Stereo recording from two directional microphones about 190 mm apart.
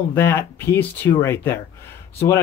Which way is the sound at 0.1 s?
10° left (ahead or behind).